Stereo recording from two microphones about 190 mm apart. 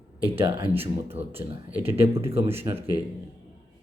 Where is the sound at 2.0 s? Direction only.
15° right (ahead or behind).